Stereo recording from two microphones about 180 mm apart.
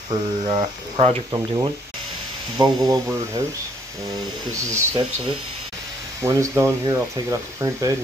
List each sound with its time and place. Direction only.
0.1 s speech: 30° right (ahead or behind)
4.6 s speech: 15° right (ahead or behind)
6.2 s speech: 15° right (ahead or behind)